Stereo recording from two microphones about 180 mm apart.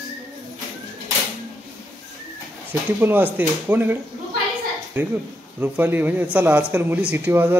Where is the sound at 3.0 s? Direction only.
10° right (ahead or behind).